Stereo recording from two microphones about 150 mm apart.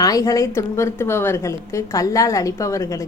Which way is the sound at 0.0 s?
20° left (ahead or behind).